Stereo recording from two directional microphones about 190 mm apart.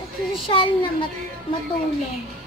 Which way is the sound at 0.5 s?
30° left (ahead or behind).